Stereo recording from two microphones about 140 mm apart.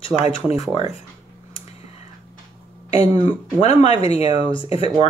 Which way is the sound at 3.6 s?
45° left (ahead or behind).